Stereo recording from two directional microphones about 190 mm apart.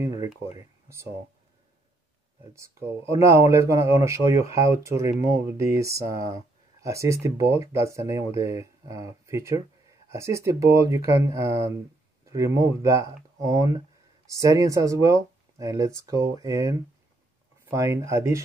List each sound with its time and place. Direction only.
0.0 s speech: 15° right (ahead or behind)
3.1 s speech: 15° right (ahead or behind)